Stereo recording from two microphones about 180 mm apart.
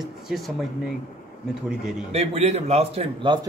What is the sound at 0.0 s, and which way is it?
Speech, centre (ahead or behind).